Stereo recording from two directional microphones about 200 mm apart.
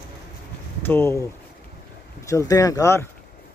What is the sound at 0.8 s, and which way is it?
Speech, 10° left (ahead or behind).